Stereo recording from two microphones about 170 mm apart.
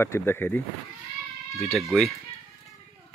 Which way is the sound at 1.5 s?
Centre (ahead or behind).